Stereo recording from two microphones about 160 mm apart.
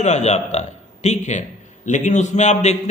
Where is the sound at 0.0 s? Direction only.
45° left (ahead or behind).